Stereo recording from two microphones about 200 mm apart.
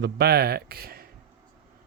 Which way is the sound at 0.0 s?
55° right (ahead or behind).